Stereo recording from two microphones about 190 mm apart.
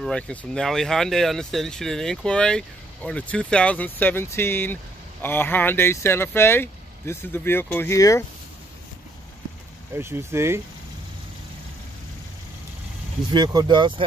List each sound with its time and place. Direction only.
0.0 s speech: 5° left (ahead or behind)
9.9 s speech: 10° right (ahead or behind)
13.3 s speech: 20° right (ahead or behind)